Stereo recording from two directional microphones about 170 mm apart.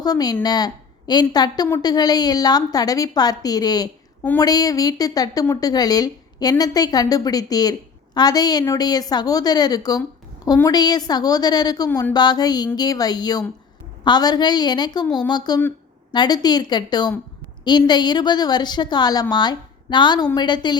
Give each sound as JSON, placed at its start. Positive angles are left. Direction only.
{"t": 0.0, "sound": "a woman's voice", "side_deg": 20}
{"t": 11.9, "sound": "speech", "side_deg": 10}
{"t": 12.1, "sound": "a woman's voice", "side_deg": 25}